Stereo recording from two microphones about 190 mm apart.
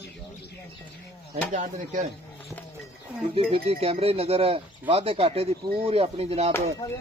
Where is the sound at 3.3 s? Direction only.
30° right (ahead or behind).